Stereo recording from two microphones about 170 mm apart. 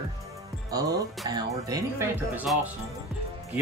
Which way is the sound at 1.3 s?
20° right (ahead or behind).